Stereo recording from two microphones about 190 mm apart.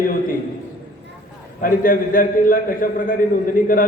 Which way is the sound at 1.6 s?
45° left (ahead or behind).